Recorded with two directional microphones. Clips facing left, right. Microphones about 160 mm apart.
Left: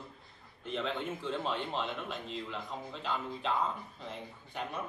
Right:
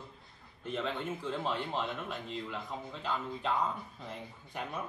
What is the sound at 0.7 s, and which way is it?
Speech, centre (ahead or behind).